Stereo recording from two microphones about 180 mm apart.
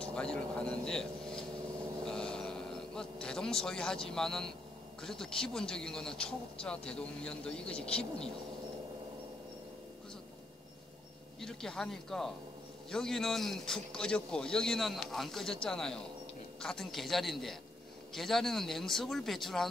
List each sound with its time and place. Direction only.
0.0 s speech: 5° left (ahead or behind)
2.0 s a sound: 5° left (ahead or behind)
5.0 s speech: 5° left (ahead or behind)
11.4 s speech: 5° left (ahead or behind)